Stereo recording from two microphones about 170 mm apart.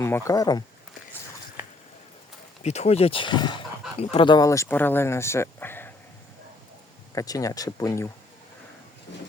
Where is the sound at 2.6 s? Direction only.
40° left (ahead or behind); by 5.9 s 10° left (ahead or behind).